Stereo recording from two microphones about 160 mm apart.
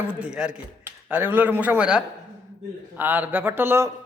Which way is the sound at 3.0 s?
10° right (ahead or behind).